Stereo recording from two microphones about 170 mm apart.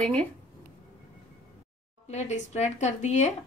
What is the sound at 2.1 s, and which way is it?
A woman's voice, 40° left (ahead or behind).